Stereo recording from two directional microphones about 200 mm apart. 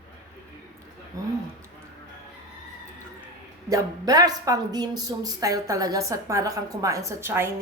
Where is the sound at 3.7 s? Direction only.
20° right (ahead or behind).